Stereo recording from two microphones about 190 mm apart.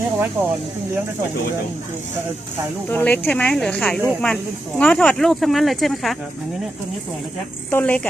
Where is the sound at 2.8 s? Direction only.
10° left (ahead or behind).